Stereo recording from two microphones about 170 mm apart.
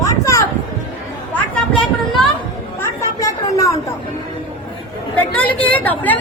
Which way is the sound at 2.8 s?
20° left (ahead or behind).